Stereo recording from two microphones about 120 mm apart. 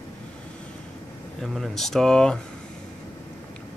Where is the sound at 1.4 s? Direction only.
Centre (ahead or behind).